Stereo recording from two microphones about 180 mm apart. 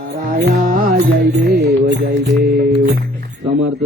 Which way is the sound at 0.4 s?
55° right (ahead or behind).